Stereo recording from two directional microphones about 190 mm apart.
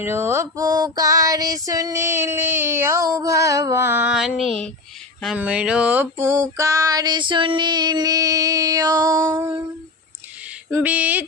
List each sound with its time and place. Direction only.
0.0 s female singing: 15° right (ahead or behind)
10.7 s female singing: 10° right (ahead or behind)